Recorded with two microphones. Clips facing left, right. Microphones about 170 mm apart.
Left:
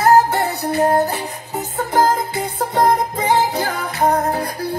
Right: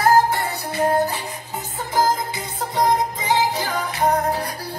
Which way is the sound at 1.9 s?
60° left (ahead or behind).